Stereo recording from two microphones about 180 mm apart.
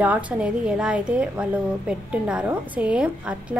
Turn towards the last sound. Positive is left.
turn(degrees=-5)  # may be behind; listen again after turning